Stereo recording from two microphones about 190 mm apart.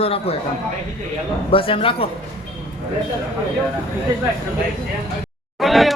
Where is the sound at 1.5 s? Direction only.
30° left (ahead or behind).